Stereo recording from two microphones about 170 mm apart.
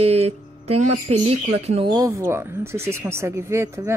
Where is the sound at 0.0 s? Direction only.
35° right (ahead or behind).